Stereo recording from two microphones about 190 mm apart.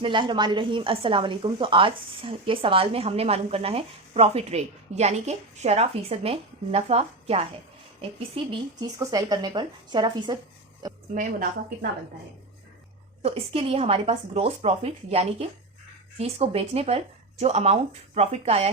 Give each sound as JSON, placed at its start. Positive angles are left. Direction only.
{"t": 0.0, "sound": "a woman's voice", "side_deg": -25}
{"t": 8.4, "sound": "speech", "side_deg": -20}
{"t": 11.1, "sound": "a woman's voice", "side_deg": -45}
{"t": 13.2, "sound": "a woman's voice", "side_deg": -30}